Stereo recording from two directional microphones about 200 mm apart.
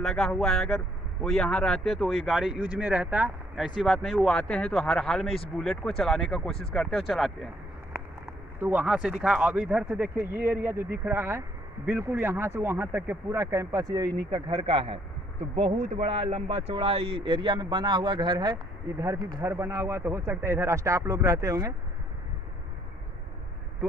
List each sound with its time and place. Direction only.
0.0 s speech: centre (ahead or behind)
8.5 s speech: 10° right (ahead or behind)